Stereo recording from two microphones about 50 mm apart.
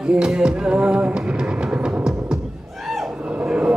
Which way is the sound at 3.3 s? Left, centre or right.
Right.